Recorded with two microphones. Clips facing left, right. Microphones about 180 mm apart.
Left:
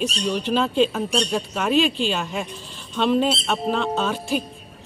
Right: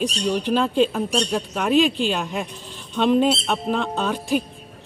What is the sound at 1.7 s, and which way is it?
Speech, 15° right (ahead or behind).